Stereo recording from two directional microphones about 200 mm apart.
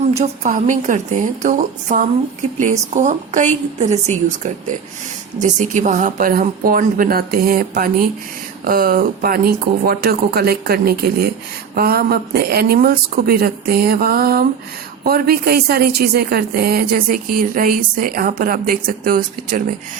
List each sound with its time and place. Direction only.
0.2 s a woman's voice: 40° right (ahead or behind)
5.4 s a woman's voice: 40° right (ahead or behind)